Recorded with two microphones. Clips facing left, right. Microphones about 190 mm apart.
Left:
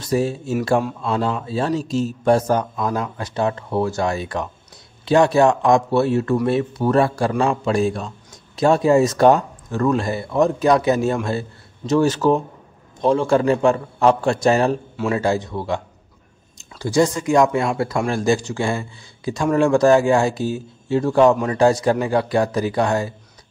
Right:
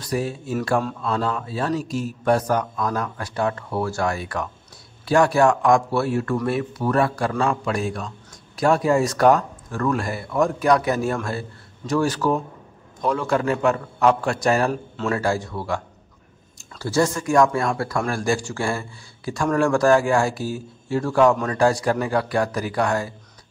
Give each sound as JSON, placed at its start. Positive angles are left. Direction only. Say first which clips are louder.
{"t": 0.0, "sound": "a man's voice", "louder": "left 5 dB", "side_deg": 25}